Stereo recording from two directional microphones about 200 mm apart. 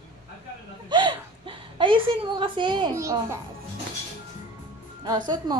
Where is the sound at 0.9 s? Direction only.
25° right (ahead or behind).